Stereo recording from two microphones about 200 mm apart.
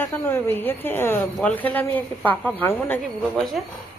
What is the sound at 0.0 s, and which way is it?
A woman's voice, 10° left (ahead or behind).